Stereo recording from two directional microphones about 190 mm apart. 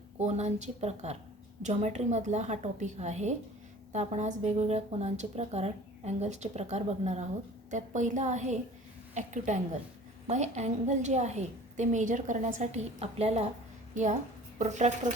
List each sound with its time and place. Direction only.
0.2 s a woman's voice: 35° right (ahead or behind)